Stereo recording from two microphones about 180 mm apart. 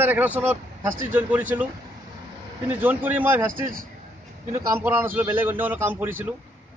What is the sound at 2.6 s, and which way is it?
Speech, 10° right (ahead or behind).